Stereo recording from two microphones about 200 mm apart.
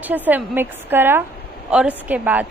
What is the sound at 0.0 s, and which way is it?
A woman's voice, 10° right (ahead or behind).